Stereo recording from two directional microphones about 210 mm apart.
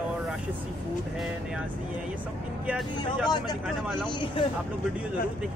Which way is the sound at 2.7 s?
Centre (ahead or behind).